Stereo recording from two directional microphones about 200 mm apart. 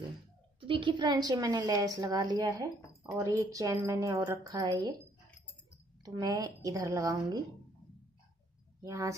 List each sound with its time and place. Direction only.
0.6 s a woman's voice: 25° right (ahead or behind)
6.0 s a woman's voice: 20° right (ahead or behind)
8.8 s a woman's voice: 15° right (ahead or behind)